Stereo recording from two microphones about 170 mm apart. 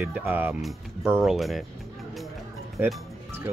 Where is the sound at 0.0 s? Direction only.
10° right (ahead or behind).